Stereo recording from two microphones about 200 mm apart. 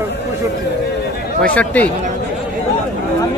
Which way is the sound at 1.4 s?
5° left (ahead or behind).